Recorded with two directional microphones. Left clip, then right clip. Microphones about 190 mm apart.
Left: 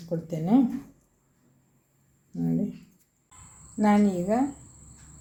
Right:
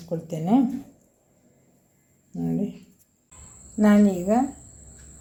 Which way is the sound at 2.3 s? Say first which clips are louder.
Right 1 dB; 5° right (ahead or behind).